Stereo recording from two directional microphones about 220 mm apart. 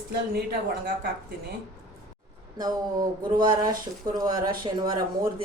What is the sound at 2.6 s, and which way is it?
Speech, 20° right (ahead or behind).